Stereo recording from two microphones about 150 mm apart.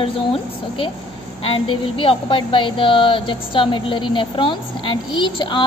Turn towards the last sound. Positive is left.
turn(degrees=35)  # may be behind; listen again after turning